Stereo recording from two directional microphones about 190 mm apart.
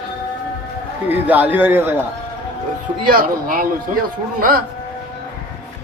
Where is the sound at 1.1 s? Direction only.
10° right (ahead or behind).